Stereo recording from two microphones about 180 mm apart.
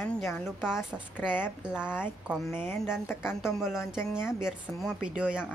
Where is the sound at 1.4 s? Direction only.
5° right (ahead or behind).